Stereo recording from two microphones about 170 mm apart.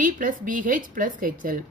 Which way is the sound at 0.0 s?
50° right (ahead or behind).